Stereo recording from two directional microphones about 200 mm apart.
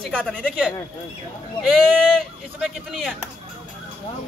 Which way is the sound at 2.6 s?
Centre (ahead or behind).